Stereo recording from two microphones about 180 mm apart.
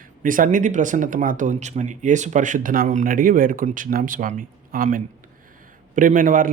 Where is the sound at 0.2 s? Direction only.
45° right (ahead or behind).